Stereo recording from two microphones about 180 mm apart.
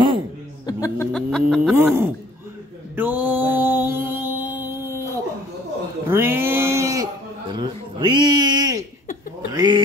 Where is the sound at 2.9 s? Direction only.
10° right (ahead or behind).